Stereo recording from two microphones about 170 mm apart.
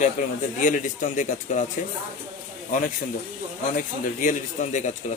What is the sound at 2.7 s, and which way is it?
A man's voice, 50° left (ahead or behind).